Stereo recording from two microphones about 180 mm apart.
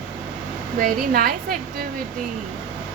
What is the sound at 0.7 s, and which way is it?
Speech, 50° right (ahead or behind).